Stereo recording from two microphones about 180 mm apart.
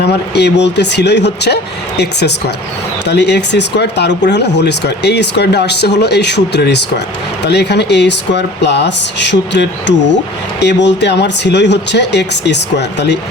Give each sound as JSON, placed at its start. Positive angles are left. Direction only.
{"t": 0.3, "sound": "speech", "side_deg": 70}